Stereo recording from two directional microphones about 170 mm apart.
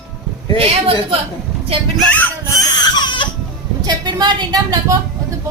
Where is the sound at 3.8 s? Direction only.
25° right (ahead or behind).